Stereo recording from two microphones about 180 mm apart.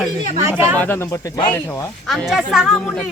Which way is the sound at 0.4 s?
15° right (ahead or behind).